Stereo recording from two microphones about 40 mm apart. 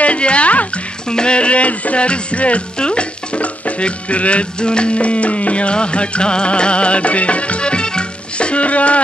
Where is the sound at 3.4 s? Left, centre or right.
Left.